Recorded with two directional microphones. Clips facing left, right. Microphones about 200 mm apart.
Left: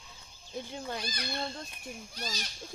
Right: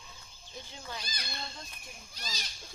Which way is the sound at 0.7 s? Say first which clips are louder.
Left 5 dB; 55° left (ahead or behind).